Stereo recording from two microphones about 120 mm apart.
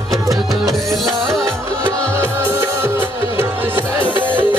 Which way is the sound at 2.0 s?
10° left (ahead or behind).